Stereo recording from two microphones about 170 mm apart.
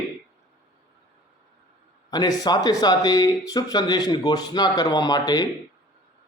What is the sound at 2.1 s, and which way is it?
A man's voice, 20° left (ahead or behind).